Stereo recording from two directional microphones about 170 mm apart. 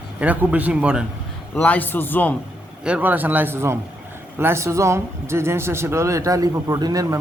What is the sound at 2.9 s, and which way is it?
A man's voice, 10° right (ahead or behind).